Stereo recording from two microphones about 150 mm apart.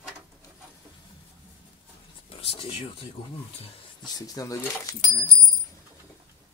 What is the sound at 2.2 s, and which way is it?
Speech, 40° left (ahead or behind).